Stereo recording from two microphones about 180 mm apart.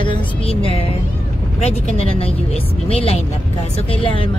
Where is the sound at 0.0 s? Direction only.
30° left (ahead or behind).